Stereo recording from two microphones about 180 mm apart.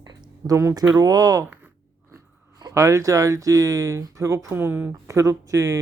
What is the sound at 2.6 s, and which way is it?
Speech, 20° right (ahead or behind).